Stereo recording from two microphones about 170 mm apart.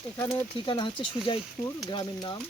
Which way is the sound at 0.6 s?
25° left (ahead or behind).